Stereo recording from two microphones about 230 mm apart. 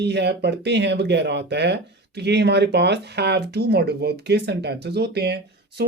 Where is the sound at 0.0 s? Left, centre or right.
Right.